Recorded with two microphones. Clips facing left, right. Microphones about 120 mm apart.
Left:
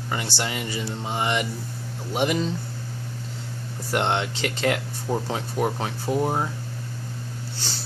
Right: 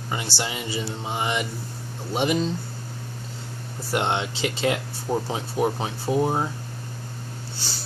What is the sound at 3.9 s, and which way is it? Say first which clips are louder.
Speech: left 1 dB; 15° right (ahead or behind).